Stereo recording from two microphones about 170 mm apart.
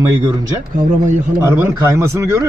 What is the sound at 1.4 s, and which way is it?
A man's voice, 15° right (ahead or behind).